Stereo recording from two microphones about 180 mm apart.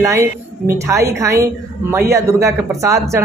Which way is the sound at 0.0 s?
15° right (ahead or behind).